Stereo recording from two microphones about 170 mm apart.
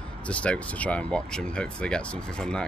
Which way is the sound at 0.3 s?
10° left (ahead or behind).